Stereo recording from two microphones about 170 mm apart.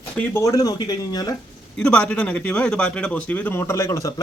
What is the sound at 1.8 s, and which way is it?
Speech, 5° left (ahead or behind).